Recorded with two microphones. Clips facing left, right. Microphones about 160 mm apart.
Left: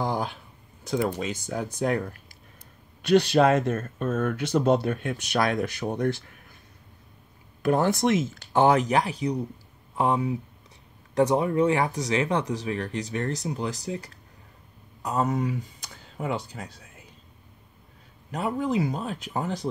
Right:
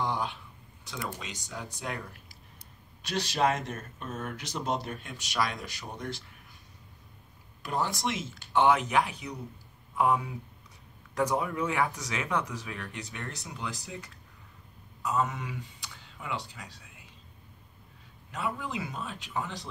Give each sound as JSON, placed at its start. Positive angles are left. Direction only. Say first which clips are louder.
{"t": 0.0, "sound": "a sound", "louder": "left 4 dB", "side_deg": 40}
{"t": 0.8, "sound": "speech", "louder": "left 12 dB", "side_deg": 45}
{"t": 3.0, "sound": "speech", "louder": "left 10 dB", "side_deg": 60}
{"t": 7.6, "sound": "speech", "louder": "left 9 dB", "side_deg": 55}
{"t": 18.3, "sound": "speech", "louder": "left 8 dB", "side_deg": 40}